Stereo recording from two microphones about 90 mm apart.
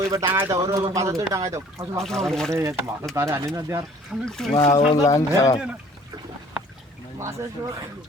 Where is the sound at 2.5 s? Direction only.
30° right (ahead or behind).